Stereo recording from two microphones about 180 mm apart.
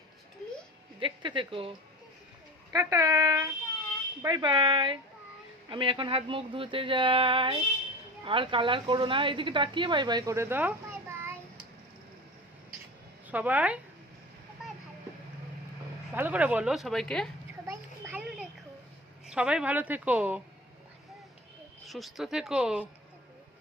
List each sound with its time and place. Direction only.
0.9 s speech: 25° right (ahead or behind)
2.7 s speech: 20° right (ahead or behind)
13.3 s a woman's voice: 10° right (ahead or behind)
14.6 s vehicle: centre (ahead or behind)
16.1 s speech: 10° right (ahead or behind)
17.7 s children playing: 10° right (ahead or behind)
19.2 s a woman's voice: 5° right (ahead or behind)
21.8 s speech: centre (ahead or behind)